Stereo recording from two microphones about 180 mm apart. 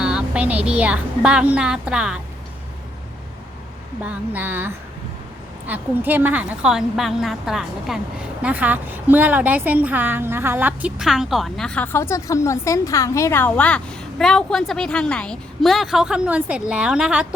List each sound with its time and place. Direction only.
0.0 s a woman's voice: 5° right (ahead or behind)
4.0 s a woman's voice: 10° right (ahead or behind)